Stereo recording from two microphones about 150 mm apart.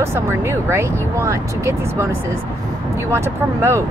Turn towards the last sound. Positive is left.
turn(degrees=-20)  # may be behind; listen again after turning